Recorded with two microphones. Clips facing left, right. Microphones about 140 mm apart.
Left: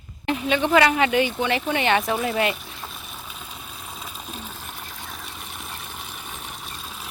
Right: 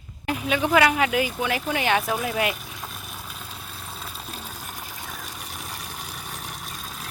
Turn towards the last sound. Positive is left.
turn(degrees=0)  # may be behind; listen again after turning